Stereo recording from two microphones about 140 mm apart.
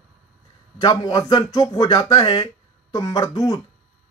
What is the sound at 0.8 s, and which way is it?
Speech, 30° left (ahead or behind).